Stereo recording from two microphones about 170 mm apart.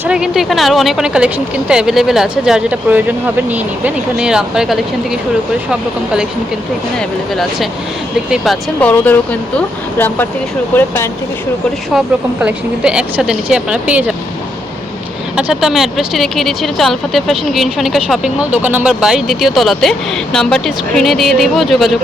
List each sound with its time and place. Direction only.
0.0 s speech: 5° right (ahead or behind)
8.3 s speech: 5° left (ahead or behind)
11.9 s speech: 5° right (ahead or behind)
15.4 s speech: 5° right (ahead or behind)